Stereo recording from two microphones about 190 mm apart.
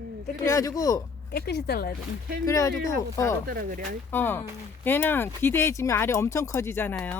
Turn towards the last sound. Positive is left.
turn(degrees=10)  # may be behind; listen again after turning